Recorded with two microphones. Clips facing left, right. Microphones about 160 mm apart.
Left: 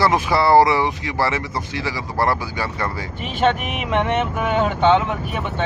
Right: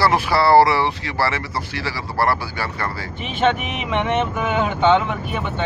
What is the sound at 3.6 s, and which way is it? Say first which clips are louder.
Speech: left 1 dB; centre (ahead or behind).